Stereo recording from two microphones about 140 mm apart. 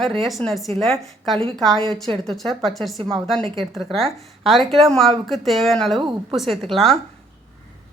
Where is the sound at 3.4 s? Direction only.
40° right (ahead or behind).